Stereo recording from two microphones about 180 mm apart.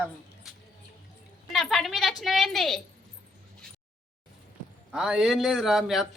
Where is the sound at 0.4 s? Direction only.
Centre (ahead or behind).